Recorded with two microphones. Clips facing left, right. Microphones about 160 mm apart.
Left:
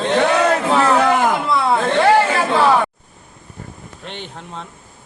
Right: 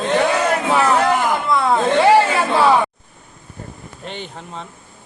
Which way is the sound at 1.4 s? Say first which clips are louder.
Even; centre (ahead or behind).